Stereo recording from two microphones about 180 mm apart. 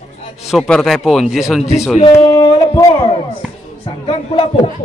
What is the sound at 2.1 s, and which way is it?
Speech, 20° left (ahead or behind).